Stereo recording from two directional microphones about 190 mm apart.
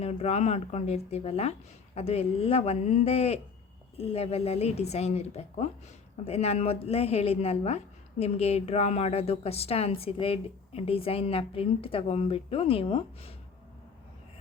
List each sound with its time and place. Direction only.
0.0 s a woman's voice: 35° left (ahead or behind)